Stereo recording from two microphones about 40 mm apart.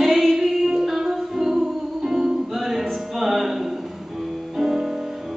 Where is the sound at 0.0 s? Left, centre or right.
Centre.